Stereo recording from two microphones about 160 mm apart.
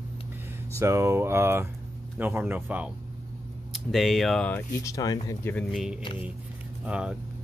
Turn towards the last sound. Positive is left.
turn(degrees=-5)  # may be behind; listen again after turning